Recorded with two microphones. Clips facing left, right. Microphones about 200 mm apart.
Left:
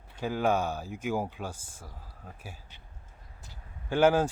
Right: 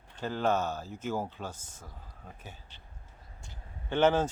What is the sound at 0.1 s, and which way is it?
Speech, 10° left (ahead or behind).